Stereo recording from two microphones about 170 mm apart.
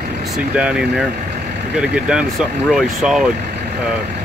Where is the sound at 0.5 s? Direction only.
5° right (ahead or behind).